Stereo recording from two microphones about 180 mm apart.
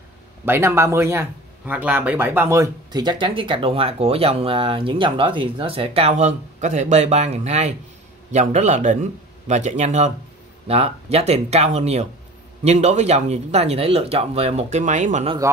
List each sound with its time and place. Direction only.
0.5 s a man's voice: 15° right (ahead or behind); by 15.2 s 45° right (ahead or behind)